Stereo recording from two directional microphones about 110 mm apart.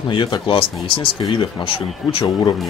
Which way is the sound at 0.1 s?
50° left (ahead or behind).